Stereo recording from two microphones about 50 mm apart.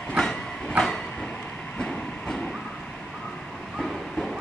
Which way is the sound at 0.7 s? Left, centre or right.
Centre.